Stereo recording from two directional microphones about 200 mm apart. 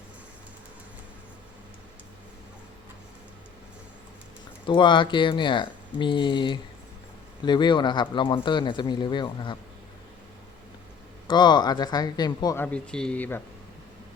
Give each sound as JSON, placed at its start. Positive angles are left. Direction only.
{"t": 4.6, "sound": "speech", "side_deg": 25}
{"t": 11.3, "sound": "speech", "side_deg": 20}
{"t": 12.6, "sound": "speech", "side_deg": 5}